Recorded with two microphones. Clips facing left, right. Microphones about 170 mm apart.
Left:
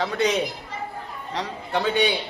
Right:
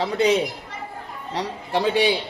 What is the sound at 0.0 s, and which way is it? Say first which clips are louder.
Speech: right 3 dB; 30° right (ahead or behind).